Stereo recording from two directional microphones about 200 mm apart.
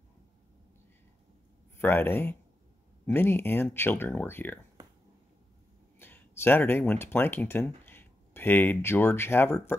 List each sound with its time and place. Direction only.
1.8 s speech: 10° left (ahead or behind)
4.8 s a sound: 20° right (ahead or behind)
5.9 s speech: 10° left (ahead or behind)